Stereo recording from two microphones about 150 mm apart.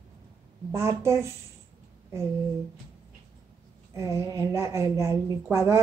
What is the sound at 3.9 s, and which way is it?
A woman's voice, 20° right (ahead or behind).